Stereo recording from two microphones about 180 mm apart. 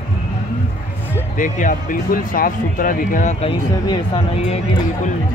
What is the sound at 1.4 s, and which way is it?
Speech, 45° left (ahead or behind).